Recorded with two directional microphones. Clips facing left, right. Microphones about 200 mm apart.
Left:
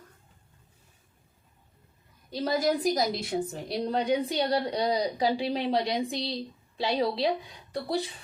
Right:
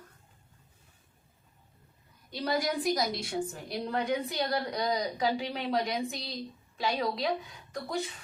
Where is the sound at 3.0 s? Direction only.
20° left (ahead or behind).